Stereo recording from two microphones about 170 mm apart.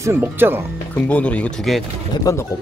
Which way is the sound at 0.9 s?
10° left (ahead or behind).